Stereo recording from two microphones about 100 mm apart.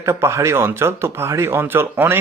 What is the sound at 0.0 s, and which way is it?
Speech, 25° right (ahead or behind).